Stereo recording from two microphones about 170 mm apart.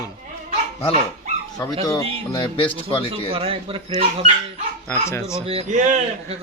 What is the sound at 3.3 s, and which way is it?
Speech, 35° right (ahead or behind).